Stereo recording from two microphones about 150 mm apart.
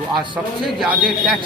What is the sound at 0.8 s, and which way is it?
Speech, 5° right (ahead or behind).